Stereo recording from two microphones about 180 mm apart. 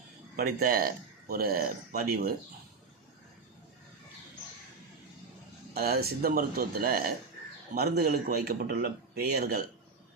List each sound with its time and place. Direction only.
0.3 s a man's voice: 55° right (ahead or behind)
5.7 s a man's voice: 60° right (ahead or behind)